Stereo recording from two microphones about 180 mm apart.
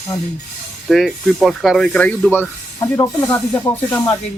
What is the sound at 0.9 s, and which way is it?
Speech, centre (ahead or behind).